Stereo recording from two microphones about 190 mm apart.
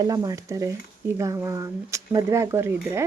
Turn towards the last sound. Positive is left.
turn(degrees=-15)  # may be behind; listen again after turning